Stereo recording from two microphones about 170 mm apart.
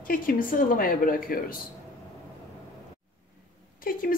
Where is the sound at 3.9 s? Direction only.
55° left (ahead or behind).